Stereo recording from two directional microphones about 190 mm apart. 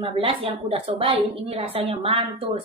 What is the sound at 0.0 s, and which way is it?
A woman's voice, 30° right (ahead or behind).